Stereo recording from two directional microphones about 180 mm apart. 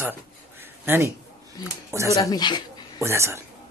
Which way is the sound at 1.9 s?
15° right (ahead or behind).